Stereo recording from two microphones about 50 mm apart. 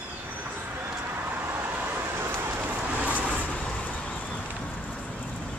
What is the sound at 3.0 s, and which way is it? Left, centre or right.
Vehicle, right.